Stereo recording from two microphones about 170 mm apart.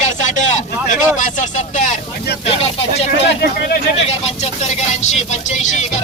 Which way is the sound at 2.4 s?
35° left (ahead or behind).